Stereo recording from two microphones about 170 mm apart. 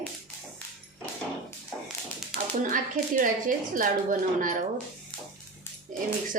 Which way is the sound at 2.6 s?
50° right (ahead or behind).